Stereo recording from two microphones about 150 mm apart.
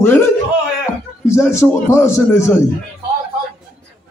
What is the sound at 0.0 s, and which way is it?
A man's voice, 15° left (ahead or behind).